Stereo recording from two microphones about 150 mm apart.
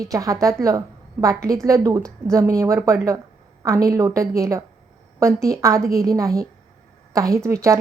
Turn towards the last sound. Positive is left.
turn(degrees=-20)  # may be behind; listen again after turning